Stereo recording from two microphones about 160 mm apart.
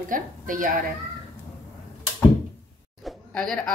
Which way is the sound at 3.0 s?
5° left (ahead or behind).